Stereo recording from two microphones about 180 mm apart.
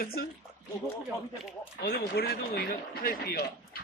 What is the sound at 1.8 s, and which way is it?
Speech, 70° left (ahead or behind).